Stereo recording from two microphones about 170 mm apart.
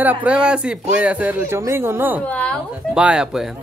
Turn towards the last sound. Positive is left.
turn(degrees=-5)  # may be behind; listen again after turning